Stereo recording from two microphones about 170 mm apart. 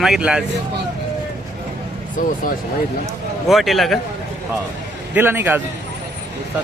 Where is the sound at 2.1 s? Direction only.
55° left (ahead or behind).